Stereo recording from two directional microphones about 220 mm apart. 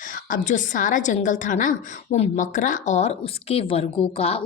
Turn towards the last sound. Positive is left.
turn(degrees=25)  # may be behind; listen again after turning